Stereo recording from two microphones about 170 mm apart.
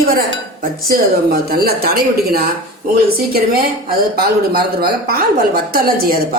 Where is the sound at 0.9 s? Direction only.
60° right (ahead or behind).